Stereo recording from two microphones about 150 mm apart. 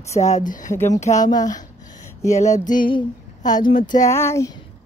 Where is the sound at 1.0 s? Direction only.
50° left (ahead or behind).